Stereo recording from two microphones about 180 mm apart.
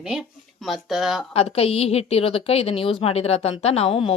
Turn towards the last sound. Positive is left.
turn(degrees=30)  # may be behind; listen again after turning